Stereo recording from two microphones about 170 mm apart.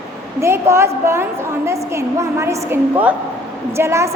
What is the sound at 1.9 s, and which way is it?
A woman's voice, 15° right (ahead or behind).